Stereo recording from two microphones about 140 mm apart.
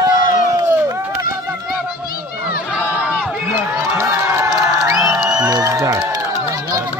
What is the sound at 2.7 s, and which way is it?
Crowd, 10° right (ahead or behind).